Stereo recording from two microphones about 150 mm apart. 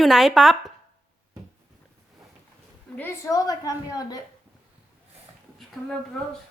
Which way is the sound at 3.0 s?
15° left (ahead or behind).